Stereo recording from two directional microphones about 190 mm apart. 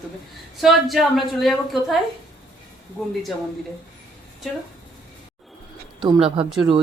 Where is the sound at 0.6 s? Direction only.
Centre (ahead or behind).